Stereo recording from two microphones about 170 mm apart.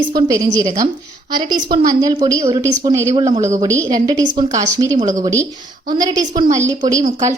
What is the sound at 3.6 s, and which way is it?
A woman's voice, 20° right (ahead or behind).